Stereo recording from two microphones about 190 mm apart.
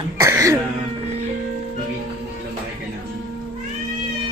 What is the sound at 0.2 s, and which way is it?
Music, 15° right (ahead or behind).